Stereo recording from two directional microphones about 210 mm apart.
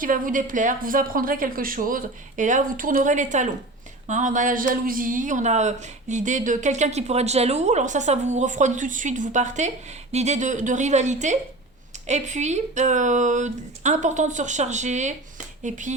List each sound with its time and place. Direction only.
0.0 s speech: 40° right (ahead or behind)